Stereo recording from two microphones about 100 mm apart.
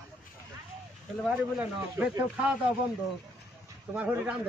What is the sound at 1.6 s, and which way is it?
Speech, 15° right (ahead or behind).